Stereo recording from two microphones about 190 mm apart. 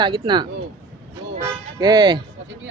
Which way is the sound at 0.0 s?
25° right (ahead or behind).